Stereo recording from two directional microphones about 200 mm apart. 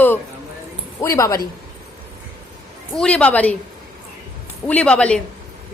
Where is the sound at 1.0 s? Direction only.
15° left (ahead or behind).